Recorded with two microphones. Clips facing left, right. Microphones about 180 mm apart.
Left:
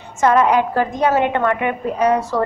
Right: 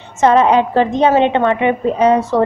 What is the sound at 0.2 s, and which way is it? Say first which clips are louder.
A woman's voice: right 3 dB; 25° right (ahead or behind).